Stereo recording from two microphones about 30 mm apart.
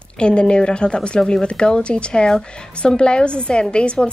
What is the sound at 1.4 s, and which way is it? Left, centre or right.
Speech, left.